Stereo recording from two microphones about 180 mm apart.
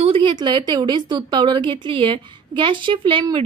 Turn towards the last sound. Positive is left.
turn(degrees=-25)  # may be behind; listen again after turning